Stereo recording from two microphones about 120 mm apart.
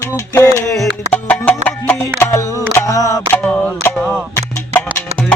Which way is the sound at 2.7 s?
30° left (ahead or behind).